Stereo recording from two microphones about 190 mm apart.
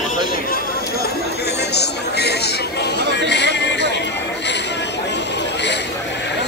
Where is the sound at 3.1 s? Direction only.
65° left (ahead or behind).